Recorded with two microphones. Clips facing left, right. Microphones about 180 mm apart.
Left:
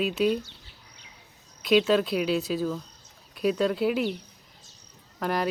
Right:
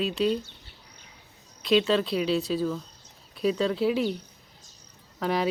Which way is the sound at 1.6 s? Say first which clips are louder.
Left 1 dB; 5° left (ahead or behind).